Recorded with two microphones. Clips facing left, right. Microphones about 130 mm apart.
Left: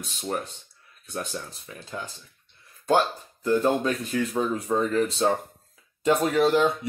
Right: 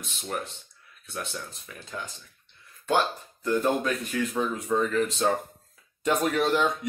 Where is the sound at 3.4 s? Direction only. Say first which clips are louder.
Left 3 dB; 30° left (ahead or behind).